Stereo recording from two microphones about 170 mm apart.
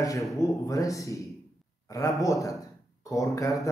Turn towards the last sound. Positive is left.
turn(degrees=20)  # may be behind; listen again after turning